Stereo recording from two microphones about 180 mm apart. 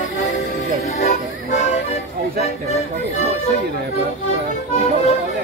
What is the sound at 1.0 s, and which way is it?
Music, 40° left (ahead or behind).